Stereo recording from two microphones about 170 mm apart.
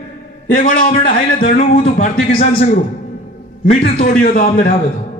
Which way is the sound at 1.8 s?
40° left (ahead or behind).